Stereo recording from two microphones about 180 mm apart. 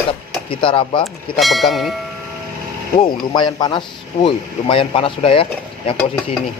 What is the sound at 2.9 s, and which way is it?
Speech, 25° left (ahead or behind).